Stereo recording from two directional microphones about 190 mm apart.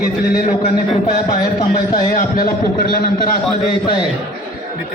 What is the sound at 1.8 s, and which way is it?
A man's voice, 50° left (ahead or behind).